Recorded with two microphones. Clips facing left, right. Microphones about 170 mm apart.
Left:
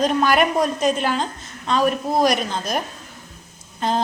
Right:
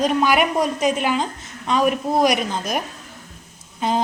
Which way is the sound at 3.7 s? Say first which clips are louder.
Right 1 dB; 10° right (ahead or behind).